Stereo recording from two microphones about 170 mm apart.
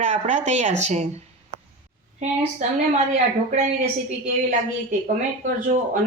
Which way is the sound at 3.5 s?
40° right (ahead or behind).